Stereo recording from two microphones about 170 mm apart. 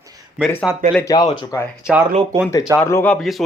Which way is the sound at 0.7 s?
5° right (ahead or behind).